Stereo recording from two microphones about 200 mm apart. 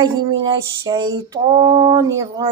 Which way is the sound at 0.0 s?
20° right (ahead or behind).